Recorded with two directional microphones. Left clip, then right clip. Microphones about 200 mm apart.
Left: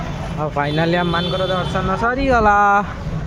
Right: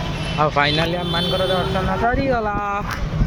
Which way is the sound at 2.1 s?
45° left (ahead or behind).